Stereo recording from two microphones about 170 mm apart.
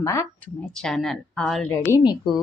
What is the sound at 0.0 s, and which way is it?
Speech, 20° left (ahead or behind).